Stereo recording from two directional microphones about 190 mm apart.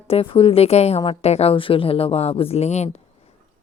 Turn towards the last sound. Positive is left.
turn(degrees=35)  # may be behind; listen again after turning